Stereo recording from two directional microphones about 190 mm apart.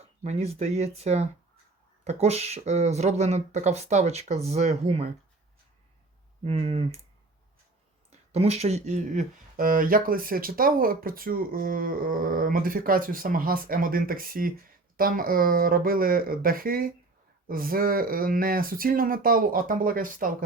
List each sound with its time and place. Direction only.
0.2 s speech: 30° right (ahead or behind)
6.4 s speech: 35° right (ahead or behind)
8.1 s speech: 35° right (ahead or behind)